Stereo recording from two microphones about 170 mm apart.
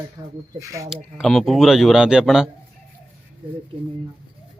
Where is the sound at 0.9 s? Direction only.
Centre (ahead or behind).